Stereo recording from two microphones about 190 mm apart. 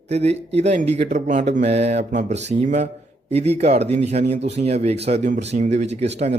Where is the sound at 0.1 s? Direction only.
35° right (ahead or behind).